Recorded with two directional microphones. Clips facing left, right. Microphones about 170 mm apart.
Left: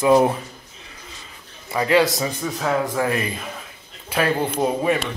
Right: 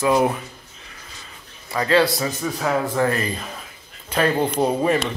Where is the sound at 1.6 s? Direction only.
20° left (ahead or behind).